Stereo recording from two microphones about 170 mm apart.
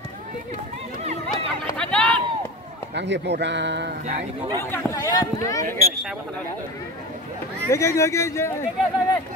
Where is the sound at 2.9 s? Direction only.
90° right.